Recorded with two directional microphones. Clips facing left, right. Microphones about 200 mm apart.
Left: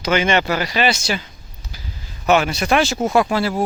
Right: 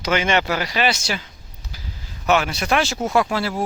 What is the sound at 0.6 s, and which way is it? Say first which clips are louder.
Speech: left 2 dB; 5° right (ahead or behind).